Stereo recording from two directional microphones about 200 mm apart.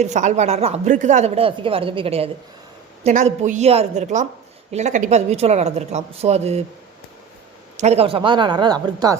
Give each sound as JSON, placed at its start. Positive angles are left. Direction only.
{"t": 0.0, "sound": "speech", "side_deg": -35}
{"t": 7.8, "sound": "speech", "side_deg": -30}